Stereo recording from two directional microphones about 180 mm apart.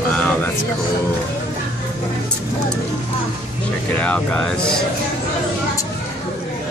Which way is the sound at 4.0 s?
5° left (ahead or behind).